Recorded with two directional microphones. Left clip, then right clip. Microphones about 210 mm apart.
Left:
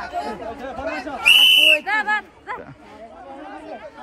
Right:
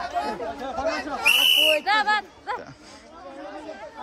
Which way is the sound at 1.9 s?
60° right (ahead or behind).